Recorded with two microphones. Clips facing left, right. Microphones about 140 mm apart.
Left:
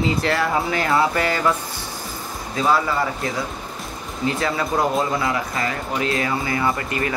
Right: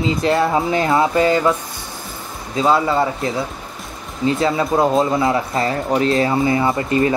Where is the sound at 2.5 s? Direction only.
25° right (ahead or behind).